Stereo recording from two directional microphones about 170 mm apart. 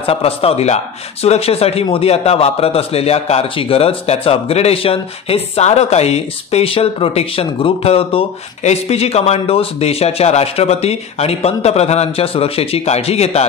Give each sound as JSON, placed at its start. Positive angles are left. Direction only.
{"t": 0.0, "sound": "a man's voice", "side_deg": 35}